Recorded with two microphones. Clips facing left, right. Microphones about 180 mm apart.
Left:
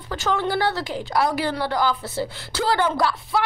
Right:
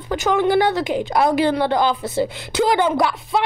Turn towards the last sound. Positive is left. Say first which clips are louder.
# right 3 dB
turn(degrees=-20)  # may be behind; listen again after turning